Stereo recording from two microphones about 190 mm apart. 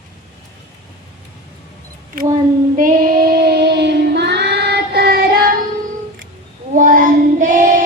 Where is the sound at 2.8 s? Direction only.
50° right (ahead or behind).